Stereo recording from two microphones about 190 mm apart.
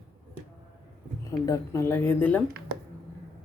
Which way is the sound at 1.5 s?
15° left (ahead or behind).